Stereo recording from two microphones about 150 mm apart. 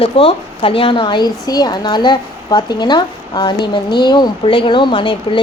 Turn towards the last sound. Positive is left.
turn(degrees=35)  # may be behind; listen again after turning